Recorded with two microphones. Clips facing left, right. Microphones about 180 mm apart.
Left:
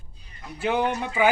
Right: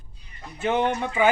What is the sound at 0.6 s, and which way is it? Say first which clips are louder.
Speech: right 1 dB; 5° left (ahead or behind).